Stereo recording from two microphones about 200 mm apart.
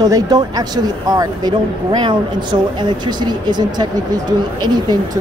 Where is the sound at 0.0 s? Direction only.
20° right (ahead or behind).